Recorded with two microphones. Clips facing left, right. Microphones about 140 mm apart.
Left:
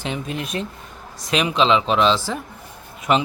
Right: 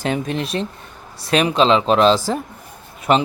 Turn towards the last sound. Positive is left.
turn(degrees=-35)  # may be behind; listen again after turning